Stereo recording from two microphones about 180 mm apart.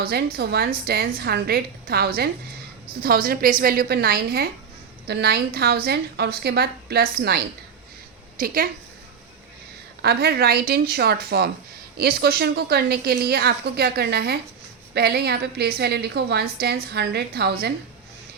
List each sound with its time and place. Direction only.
0.0 s a woman's voice: 60° right (ahead or behind)
10.0 s a woman's voice: 60° right (ahead or behind)